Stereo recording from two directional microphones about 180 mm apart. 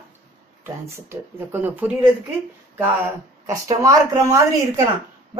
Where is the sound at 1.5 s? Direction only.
10° right (ahead or behind).